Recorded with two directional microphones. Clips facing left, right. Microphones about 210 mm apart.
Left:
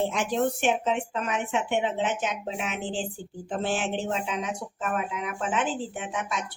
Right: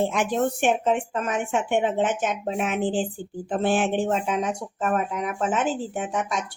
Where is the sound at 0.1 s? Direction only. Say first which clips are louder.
Right 2 dB; 50° right (ahead or behind).